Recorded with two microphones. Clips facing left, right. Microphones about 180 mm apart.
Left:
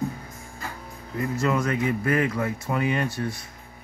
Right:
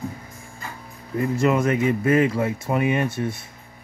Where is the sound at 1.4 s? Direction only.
25° right (ahead or behind).